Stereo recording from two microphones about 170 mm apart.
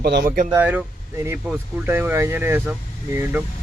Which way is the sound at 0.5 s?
10° right (ahead or behind).